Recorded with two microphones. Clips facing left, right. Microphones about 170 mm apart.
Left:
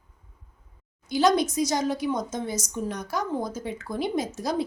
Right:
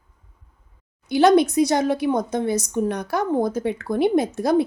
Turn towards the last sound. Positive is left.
turn(degrees=-60)  # may be behind; listen again after turning